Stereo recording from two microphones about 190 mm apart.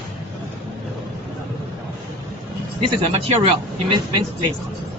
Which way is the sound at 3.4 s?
25° right (ahead or behind).